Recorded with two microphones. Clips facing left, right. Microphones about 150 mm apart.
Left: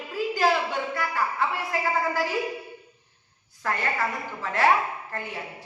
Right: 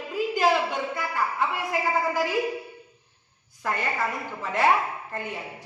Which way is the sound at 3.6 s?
15° right (ahead or behind).